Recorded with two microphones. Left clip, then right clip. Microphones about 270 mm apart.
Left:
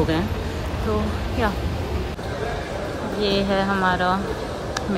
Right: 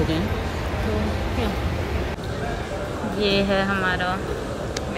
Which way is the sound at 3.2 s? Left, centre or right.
Centre.